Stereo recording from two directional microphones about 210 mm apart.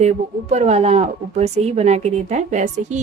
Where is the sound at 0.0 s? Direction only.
30° right (ahead or behind).